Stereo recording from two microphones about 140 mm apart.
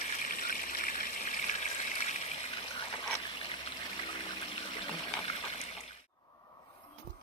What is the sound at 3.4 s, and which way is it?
Water, 40° left (ahead or behind).